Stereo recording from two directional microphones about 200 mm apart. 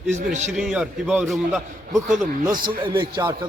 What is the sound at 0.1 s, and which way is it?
Speech, 35° right (ahead or behind).